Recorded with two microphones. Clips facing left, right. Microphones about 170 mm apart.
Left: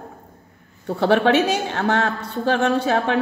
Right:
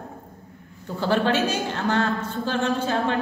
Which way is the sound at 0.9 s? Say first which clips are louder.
Left 5 dB; 70° left (ahead or behind).